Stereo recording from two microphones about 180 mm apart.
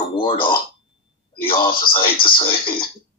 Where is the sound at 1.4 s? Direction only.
25° left (ahead or behind).